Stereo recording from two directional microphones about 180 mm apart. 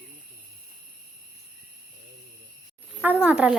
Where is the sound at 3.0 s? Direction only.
10° right (ahead or behind).